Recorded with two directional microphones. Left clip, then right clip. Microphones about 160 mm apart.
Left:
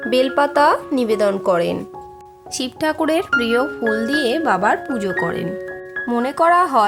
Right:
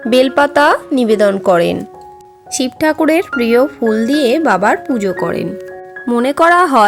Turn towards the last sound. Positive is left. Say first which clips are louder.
# right 5 dB
turn(degrees=-25)  # may be behind; listen again after turning